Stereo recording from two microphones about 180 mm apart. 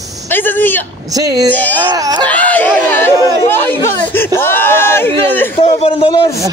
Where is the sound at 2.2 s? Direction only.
10° left (ahead or behind).